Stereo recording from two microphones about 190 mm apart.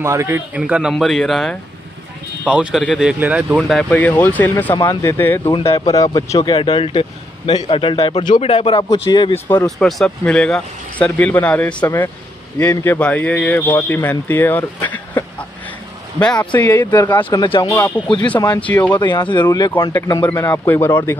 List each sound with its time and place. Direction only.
0.0 s speech: 15° right (ahead or behind)
3.5 s speech: 5° left (ahead or behind)
5.5 s a man's voice: 30° left (ahead or behind)
6.0 s a man's voice: 20° left (ahead or behind)
9.3 s a man's voice: 10° left (ahead or behind)
17.7 s speech: 10° left (ahead or behind)
18.9 s a man's voice: 25° left (ahead or behind)